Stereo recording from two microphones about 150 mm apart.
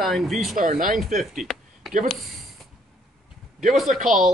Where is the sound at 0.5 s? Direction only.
65° right (ahead or behind).